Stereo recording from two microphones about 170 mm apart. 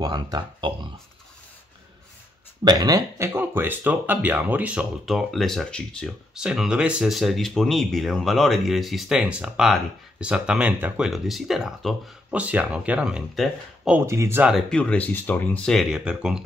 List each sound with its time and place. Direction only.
0.0 s speech: 25° right (ahead or behind)
2.6 s speech: 25° right (ahead or behind)
14.5 s speech: 5° left (ahead or behind)